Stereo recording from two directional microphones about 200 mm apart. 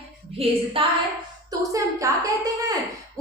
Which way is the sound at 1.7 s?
15° right (ahead or behind).